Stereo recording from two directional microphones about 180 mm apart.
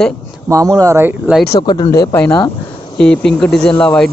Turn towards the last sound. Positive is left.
turn(degrees=5)  # may be behind; listen again after turning